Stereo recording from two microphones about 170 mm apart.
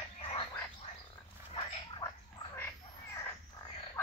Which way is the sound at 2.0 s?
15° left (ahead or behind).